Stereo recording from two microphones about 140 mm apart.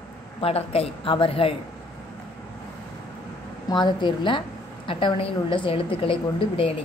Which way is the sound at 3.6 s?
30° left (ahead or behind).